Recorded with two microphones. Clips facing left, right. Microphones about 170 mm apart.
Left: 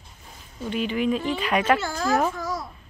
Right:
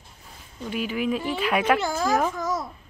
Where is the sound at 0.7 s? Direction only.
5° right (ahead or behind).